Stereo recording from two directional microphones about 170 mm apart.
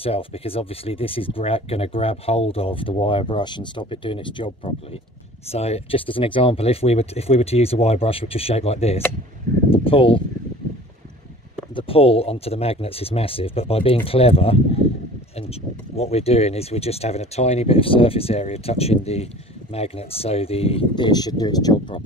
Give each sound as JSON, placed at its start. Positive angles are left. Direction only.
{"t": 0.0, "sound": "speech", "side_deg": 35}
{"t": 11.7, "sound": "speech", "side_deg": 35}
{"t": 16.0, "sound": "speech", "side_deg": 35}